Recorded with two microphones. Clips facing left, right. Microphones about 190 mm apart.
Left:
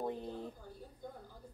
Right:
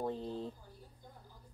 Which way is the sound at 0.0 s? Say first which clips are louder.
Right 1 dB; 15° left (ahead or behind).